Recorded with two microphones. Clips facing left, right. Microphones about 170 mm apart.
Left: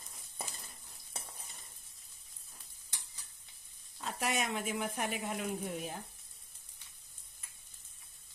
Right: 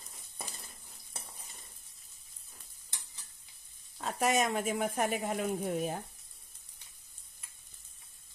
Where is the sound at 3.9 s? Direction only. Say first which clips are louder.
Right 6 dB; 50° right (ahead or behind).